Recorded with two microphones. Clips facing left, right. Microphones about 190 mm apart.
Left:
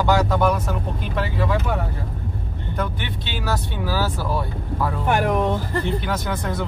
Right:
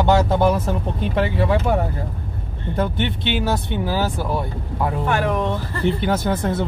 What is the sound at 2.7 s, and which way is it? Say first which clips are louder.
Speech: right 6 dB; 25° right (ahead or behind).